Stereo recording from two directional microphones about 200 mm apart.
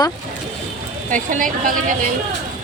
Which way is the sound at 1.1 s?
40° right (ahead or behind).